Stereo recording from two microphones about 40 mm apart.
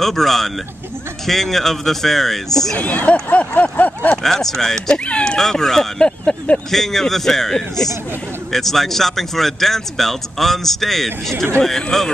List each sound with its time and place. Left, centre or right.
0.0 s speech: centre
2.8 s speech: left
3.7 s a sound: left
4.2 s speech: centre
4.9 s speech: left
5.4 s speech: centre